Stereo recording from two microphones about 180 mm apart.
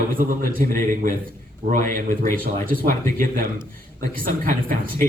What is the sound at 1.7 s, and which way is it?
Speech, 50° right (ahead or behind).